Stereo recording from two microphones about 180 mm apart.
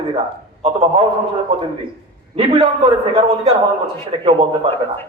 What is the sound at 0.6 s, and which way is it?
Speech, 35° right (ahead or behind).